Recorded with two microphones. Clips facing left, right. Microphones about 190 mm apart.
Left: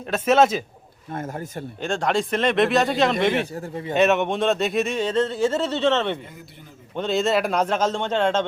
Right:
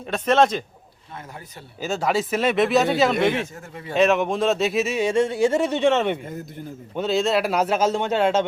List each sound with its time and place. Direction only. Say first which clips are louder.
0.0 s speech: left 1 dB; 5° left (ahead or behind)
1.1 s speech: left 9 dB; 45° left (ahead or behind)
1.8 s speech: even; 5° right (ahead or behind)
3.4 s speech: left 5 dB; 35° left (ahead or behind)
3.9 s speech: even; centre (ahead or behind)